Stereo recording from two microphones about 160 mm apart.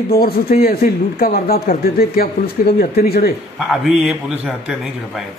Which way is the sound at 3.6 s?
5° right (ahead or behind).